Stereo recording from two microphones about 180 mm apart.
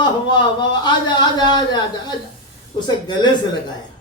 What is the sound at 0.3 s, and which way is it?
A man's voice, 25° left (ahead or behind).